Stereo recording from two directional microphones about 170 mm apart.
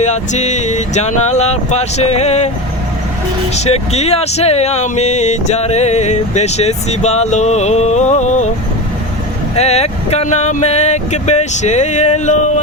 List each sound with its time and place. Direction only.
0.0 s speech: 45° left (ahead or behind)
3.5 s speech: 40° left (ahead or behind)
9.6 s speech: 40° left (ahead or behind)